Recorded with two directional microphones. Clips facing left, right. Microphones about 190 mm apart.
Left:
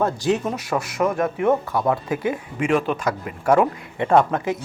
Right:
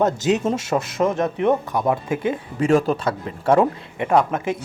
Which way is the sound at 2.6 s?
40° right (ahead or behind).